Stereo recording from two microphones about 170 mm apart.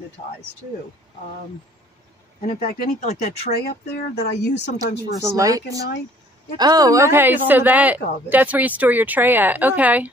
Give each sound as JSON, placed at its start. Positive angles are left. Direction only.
{"t": 2.4, "sound": "speech", "side_deg": 55}
{"t": 3.5, "sound": "speech", "side_deg": 70}
{"t": 4.7, "sound": "speech", "side_deg": -20}